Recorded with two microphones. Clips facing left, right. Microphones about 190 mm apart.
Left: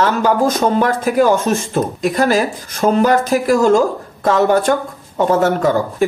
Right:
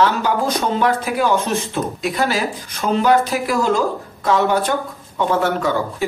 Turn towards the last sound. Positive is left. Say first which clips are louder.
# left 5 dB
turn(degrees=45)  # may be behind; listen again after turning